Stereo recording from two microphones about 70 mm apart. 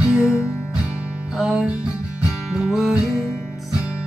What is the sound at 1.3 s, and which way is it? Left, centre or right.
Music, centre.